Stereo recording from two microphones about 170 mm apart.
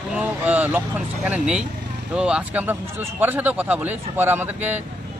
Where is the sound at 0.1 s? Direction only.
10° right (ahead or behind).